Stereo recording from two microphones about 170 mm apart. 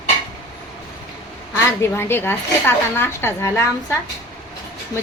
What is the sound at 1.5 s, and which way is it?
Speech, 15° left (ahead or behind).